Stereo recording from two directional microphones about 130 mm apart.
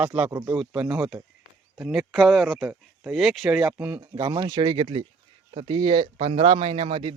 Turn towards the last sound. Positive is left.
turn(degrees=-40)  # may be behind; listen again after turning